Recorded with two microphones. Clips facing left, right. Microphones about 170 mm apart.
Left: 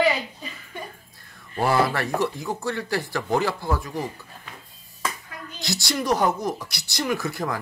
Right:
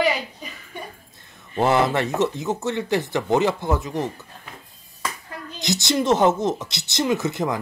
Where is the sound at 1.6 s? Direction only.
20° right (ahead or behind).